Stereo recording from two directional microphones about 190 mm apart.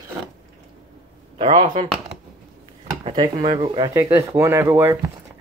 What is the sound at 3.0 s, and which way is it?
Speech, 25° right (ahead or behind).